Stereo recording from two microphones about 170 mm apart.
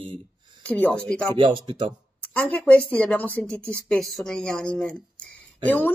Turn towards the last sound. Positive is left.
turn(degrees=10)  # may be behind; listen again after turning